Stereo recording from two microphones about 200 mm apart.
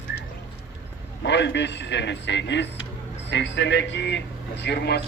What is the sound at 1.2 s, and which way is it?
A man's voice, 60° left (ahead or behind).